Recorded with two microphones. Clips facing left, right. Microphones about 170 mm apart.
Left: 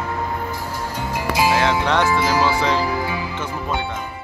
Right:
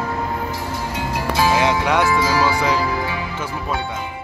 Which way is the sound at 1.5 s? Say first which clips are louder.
Right 1 dB; 15° right (ahead or behind).